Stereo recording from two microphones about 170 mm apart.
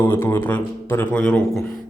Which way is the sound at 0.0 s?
15° left (ahead or behind).